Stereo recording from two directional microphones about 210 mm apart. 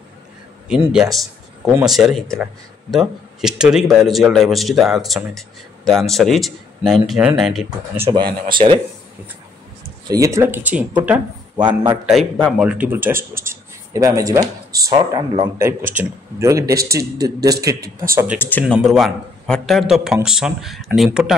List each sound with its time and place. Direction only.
0.7 s a man's voice: 5° right (ahead or behind)
1.1 s a sound: centre (ahead or behind)
1.7 s a man's voice: 5° right (ahead or behind)
8.1 s speech: 20° right (ahead or behind)
10.0 s a man's voice: 15° right (ahead or behind)
11.5 s a man's voice: 20° right (ahead or behind)
11.9 s a man's voice: centre (ahead or behind)
17.7 s speech: 45° right (ahead or behind)
18.1 s a man's voice: 5° right (ahead or behind)
18.4 s a man's voice: 10° left (ahead or behind)